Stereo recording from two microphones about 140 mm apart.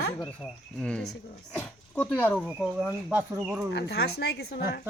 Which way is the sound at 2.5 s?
5° right (ahead or behind).